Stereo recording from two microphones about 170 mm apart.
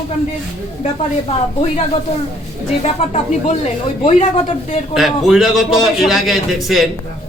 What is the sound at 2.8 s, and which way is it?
A man's voice, 40° left (ahead or behind).